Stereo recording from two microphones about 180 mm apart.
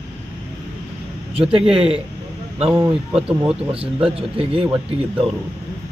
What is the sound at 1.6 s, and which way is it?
Speech, 5° right (ahead or behind).